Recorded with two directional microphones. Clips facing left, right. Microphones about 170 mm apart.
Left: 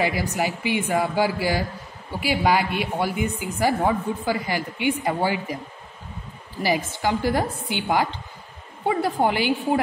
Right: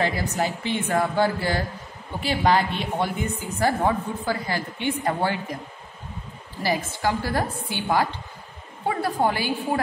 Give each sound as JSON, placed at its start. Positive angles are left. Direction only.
{"t": 0.0, "sound": "speech", "side_deg": 10}
{"t": 6.6, "sound": "speech", "side_deg": 15}